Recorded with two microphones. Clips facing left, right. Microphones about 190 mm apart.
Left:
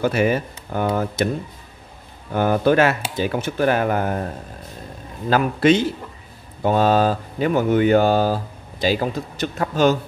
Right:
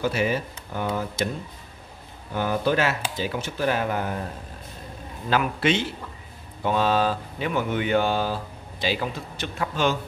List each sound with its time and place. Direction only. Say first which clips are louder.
0.0 s speech: left 5 dB; 55° left (ahead or behind)
2.3 s speech: left 7 dB; 55° left (ahead or behind)
5.3 s speech: left 6 dB; 40° left (ahead or behind)